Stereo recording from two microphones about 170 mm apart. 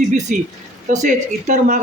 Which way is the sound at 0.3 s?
50° right (ahead or behind).